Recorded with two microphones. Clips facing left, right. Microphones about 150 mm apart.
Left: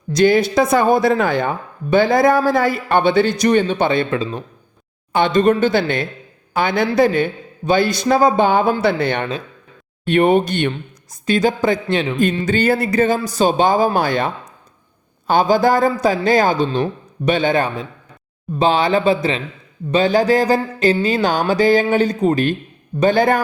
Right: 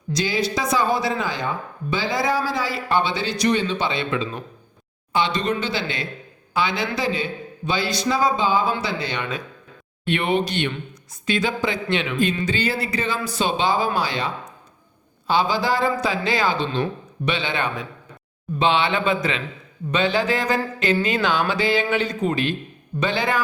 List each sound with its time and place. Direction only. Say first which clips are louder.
0.1 s speech: left 9 dB; 55° left (ahead or behind)
5.1 s speech: left 8 dB; 50° left (ahead or behind)
10.1 s speech: left 8 dB; 45° left (ahead or behind)
12.5 s speech: left 8 dB; 50° left (ahead or behind)